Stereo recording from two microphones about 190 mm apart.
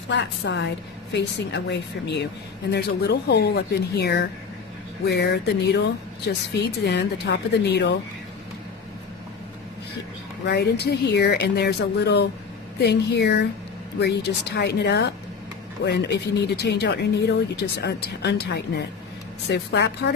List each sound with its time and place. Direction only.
0.1 s a woman's voice: 65° left (ahead or behind)
10.4 s speech: 60° left (ahead or behind)